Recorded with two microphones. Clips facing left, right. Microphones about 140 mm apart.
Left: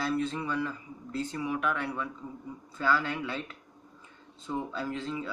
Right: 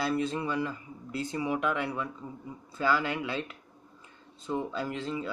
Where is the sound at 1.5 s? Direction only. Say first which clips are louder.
Right 2 dB; 25° right (ahead or behind).